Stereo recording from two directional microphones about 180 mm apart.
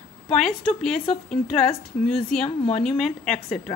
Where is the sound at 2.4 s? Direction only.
35° left (ahead or behind).